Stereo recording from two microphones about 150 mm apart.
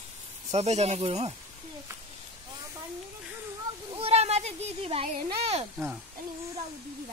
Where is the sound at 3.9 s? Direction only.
45° right (ahead or behind).